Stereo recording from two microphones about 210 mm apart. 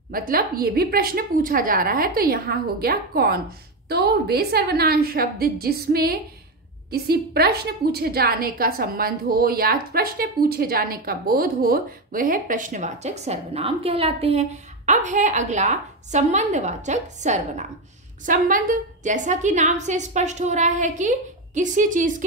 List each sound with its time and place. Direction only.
0.1 s a woman's voice: 45° right (ahead or behind)